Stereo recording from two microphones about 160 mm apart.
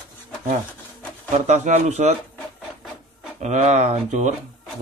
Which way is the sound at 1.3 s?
45° right (ahead or behind).